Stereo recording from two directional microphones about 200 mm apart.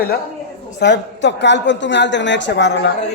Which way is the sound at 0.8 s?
60° left (ahead or behind).